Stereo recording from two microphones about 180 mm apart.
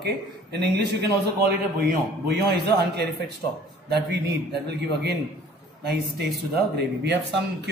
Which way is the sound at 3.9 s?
65° right (ahead or behind).